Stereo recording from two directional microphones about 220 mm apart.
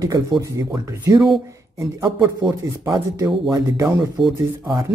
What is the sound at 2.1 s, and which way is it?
Speech, centre (ahead or behind).